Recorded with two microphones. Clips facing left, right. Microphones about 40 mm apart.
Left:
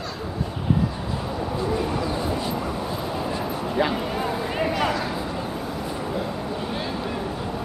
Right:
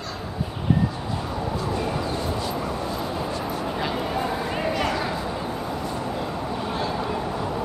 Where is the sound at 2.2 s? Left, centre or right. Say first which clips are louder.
Left 1 dB; centre.